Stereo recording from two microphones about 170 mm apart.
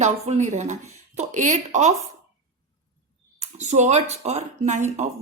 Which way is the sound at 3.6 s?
45° right (ahead or behind).